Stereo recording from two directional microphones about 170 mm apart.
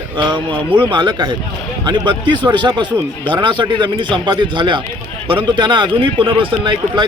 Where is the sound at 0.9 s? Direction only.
25° right (ahead or behind).